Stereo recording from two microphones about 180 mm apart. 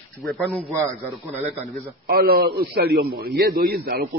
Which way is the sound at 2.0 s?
55° right (ahead or behind).